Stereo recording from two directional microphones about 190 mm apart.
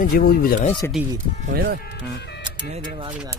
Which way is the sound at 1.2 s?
45° right (ahead or behind).